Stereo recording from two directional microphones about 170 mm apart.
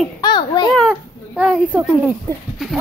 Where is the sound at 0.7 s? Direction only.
Centre (ahead or behind).